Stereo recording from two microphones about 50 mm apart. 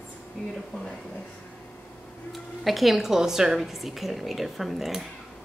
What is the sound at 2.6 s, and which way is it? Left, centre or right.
A woman's voice, centre.